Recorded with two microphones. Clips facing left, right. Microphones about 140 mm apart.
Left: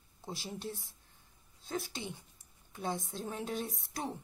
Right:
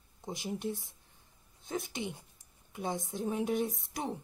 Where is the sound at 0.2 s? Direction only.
15° right (ahead or behind).